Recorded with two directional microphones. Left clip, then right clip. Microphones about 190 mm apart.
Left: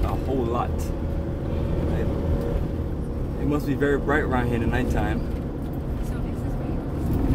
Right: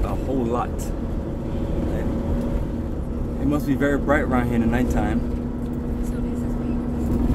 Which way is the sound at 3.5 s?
20° right (ahead or behind).